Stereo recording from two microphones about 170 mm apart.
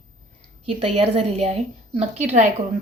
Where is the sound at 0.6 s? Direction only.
35° right (ahead or behind).